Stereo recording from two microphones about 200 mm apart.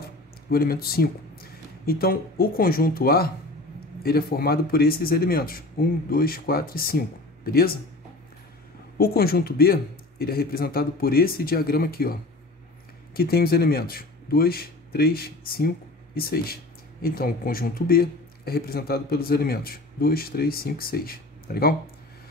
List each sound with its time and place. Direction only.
0.5 s speech: 50° left (ahead or behind)
8.9 s speech: 50° left (ahead or behind)